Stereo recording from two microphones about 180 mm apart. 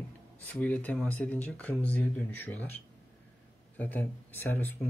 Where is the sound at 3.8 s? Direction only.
10° left (ahead or behind).